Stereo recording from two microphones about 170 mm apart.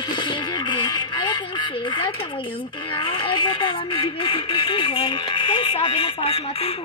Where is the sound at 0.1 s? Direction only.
25° left (ahead or behind).